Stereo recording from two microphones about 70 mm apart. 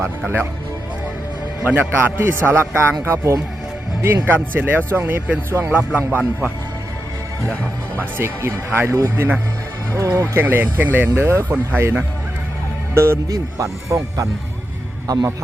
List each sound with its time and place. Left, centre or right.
1.6 s a man's voice: right
8.2 s a man's voice: right
11.2 s a man's voice: right
11.8 s a man's voice: right
13.3 s speech: right
15.0 s speech: right